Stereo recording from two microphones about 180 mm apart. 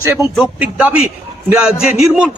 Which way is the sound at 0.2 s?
5° right (ahead or behind).